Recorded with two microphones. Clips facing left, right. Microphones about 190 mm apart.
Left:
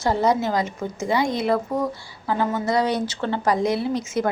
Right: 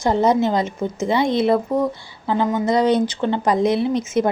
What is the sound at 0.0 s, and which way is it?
A woman's voice, 20° right (ahead or behind).